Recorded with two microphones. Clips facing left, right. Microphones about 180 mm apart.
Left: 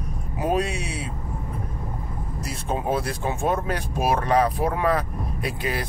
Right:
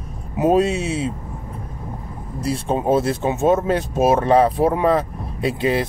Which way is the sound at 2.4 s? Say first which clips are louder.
Right 7 dB; 30° right (ahead or behind).